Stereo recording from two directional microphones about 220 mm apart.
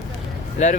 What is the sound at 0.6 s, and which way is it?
Speech, 30° left (ahead or behind).